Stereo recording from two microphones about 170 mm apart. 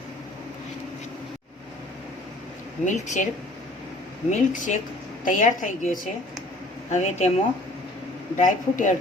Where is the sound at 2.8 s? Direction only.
45° left (ahead or behind).